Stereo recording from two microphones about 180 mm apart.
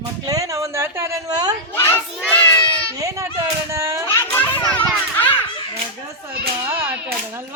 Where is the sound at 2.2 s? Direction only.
10° left (ahead or behind).